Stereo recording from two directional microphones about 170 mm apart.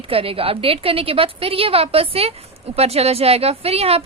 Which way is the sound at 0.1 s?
35° right (ahead or behind).